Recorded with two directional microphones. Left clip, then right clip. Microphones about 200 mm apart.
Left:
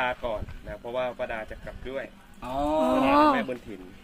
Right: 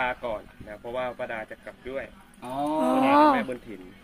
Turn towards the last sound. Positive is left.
turn(degrees=-10)  # may be behind; listen again after turning